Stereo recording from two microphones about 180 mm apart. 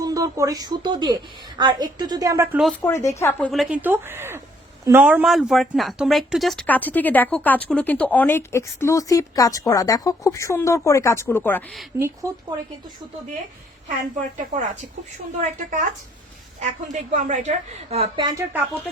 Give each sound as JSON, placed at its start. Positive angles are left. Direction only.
{"t": 0.0, "sound": "a woman's voice", "side_deg": -20}
{"t": 2.8, "sound": "speech", "side_deg": 15}
{"t": 3.5, "sound": "speech", "side_deg": -5}
{"t": 11.9, "sound": "speech", "side_deg": -15}
{"t": 14.2, "sound": "a woman's voice", "side_deg": -45}
{"t": 16.6, "sound": "a woman's voice", "side_deg": -40}
{"t": 17.9, "sound": "a woman's voice", "side_deg": -30}